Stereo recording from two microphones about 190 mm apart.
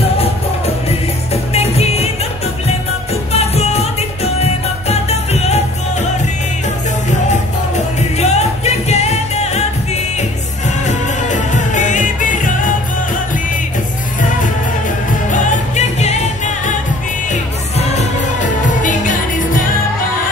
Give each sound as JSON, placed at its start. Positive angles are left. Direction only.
{"t": 0.8, "sound": "music", "side_deg": 35}
{"t": 3.3, "sound": "music", "side_deg": 35}
{"t": 7.7, "sound": "music", "side_deg": 35}
{"t": 10.9, "sound": "music", "side_deg": 40}
{"t": 15.2, "sound": "music", "side_deg": 40}